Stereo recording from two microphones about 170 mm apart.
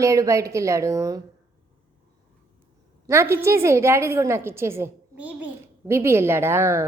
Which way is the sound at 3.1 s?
15° right (ahead or behind).